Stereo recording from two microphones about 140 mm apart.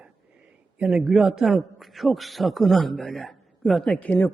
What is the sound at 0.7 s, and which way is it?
A man's voice, 5° right (ahead or behind).